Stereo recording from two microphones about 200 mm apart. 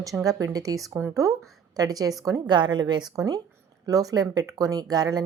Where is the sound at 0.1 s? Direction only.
5° right (ahead or behind).